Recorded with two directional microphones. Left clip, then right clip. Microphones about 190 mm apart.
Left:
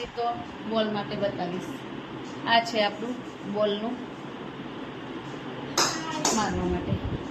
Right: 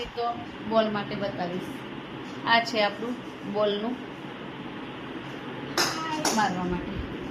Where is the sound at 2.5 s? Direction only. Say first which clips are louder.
Even; 15° right (ahead or behind).